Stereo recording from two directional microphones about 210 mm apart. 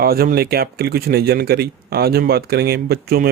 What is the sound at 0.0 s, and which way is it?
Speech, 45° right (ahead or behind).